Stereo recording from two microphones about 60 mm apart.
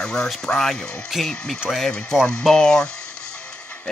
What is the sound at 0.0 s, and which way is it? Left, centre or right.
Music, centre.